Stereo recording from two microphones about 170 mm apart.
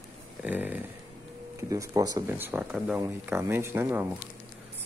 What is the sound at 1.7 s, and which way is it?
Speech, 20° right (ahead or behind).